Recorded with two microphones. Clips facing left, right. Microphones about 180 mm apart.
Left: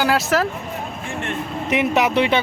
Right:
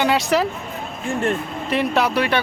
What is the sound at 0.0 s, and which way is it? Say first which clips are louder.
Speech: even; centre (ahead or behind).